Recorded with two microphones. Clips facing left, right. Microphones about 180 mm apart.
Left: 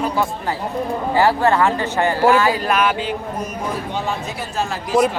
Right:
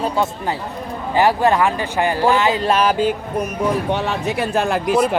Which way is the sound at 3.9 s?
65° right (ahead or behind).